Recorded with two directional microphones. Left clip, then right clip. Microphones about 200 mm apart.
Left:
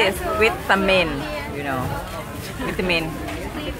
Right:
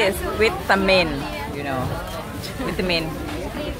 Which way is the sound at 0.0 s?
Centre (ahead or behind).